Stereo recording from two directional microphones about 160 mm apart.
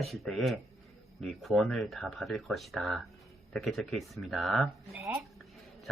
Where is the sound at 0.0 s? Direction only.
Centre (ahead or behind).